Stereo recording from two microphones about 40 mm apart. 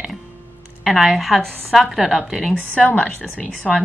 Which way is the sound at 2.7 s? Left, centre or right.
Left.